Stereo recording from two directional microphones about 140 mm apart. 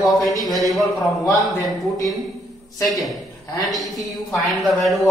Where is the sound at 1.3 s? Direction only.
Centre (ahead or behind).